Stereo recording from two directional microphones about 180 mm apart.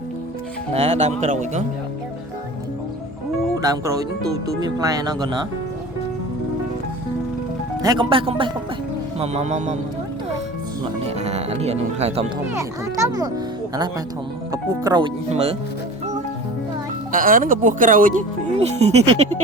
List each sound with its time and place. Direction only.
0.7 s speech: 35° right (ahead or behind)
3.6 s speech: 20° right (ahead or behind)
7.8 s speech: 25° right (ahead or behind)
11.0 s speech: 35° right (ahead or behind)
13.1 s speech: 20° right (ahead or behind)
14.5 s speech: 25° right (ahead or behind)
15.3 s speech: 35° right (ahead or behind)
17.1 s speech: 50° right (ahead or behind)